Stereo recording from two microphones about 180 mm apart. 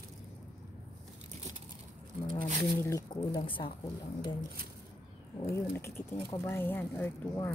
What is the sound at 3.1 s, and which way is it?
Speech, 30° left (ahead or behind).